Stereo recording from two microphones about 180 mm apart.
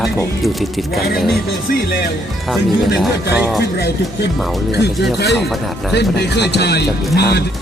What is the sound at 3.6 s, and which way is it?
Speech, 70° left (ahead or behind).